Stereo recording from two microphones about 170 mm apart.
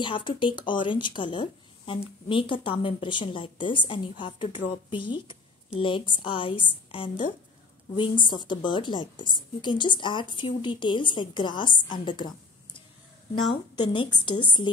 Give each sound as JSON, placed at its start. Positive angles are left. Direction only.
{"t": 0.0, "sound": "a woman's voice", "side_deg": 30}
{"t": 13.7, "sound": "a woman's voice", "side_deg": 25}